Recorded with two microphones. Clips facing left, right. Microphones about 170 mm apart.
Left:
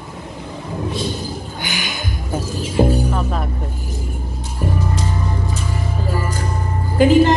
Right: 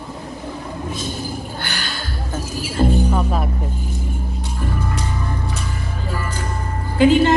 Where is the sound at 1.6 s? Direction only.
15° left (ahead or behind).